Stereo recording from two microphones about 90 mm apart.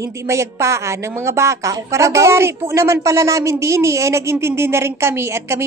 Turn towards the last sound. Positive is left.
turn(degrees=-30)  # may be behind; listen again after turning